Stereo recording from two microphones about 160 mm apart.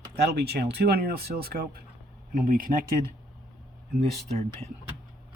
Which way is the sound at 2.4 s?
60° right (ahead or behind).